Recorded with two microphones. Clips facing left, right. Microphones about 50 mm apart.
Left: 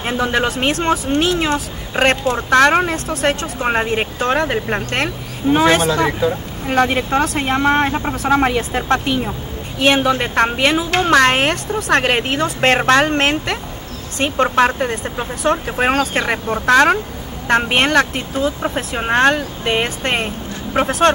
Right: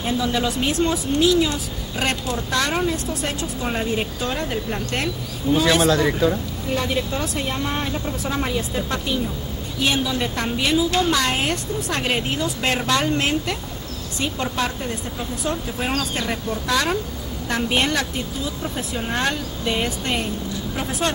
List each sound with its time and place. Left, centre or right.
0.0 s speech: left
6.2 s speech: centre
6.6 s speech: left